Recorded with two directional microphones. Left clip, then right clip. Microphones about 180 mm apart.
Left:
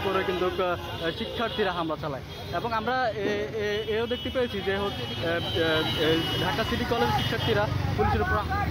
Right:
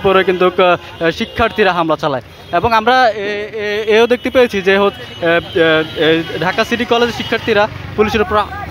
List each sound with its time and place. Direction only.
0.1 s speech: 40° right (ahead or behind)
3.9 s speech: 40° right (ahead or behind)